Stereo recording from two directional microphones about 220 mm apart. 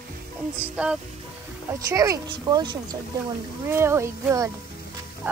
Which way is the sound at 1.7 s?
15° right (ahead or behind).